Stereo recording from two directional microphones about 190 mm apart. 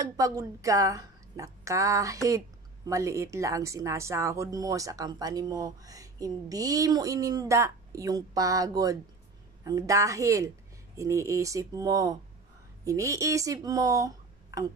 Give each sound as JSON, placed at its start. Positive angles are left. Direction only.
{"t": 0.0, "sound": "speech", "side_deg": -15}